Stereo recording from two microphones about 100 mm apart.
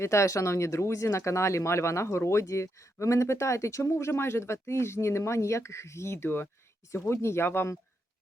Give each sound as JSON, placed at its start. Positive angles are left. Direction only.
{"t": 0.0, "sound": "speech", "side_deg": 30}